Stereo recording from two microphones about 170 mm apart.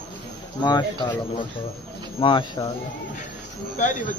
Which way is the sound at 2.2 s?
30° left (ahead or behind).